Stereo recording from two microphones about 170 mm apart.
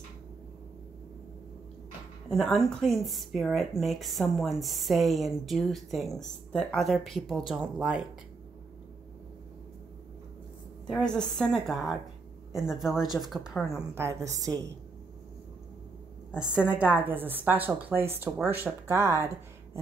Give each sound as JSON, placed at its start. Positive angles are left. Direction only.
{"t": 2.2, "sound": "a woman's voice", "side_deg": 5}
{"t": 10.9, "sound": "a woman's voice", "side_deg": 5}
{"t": 13.9, "sound": "a woman's voice", "side_deg": -15}
{"t": 16.3, "sound": "a woman's voice", "side_deg": -5}